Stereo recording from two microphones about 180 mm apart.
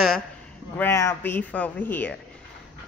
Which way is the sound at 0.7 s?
15° left (ahead or behind).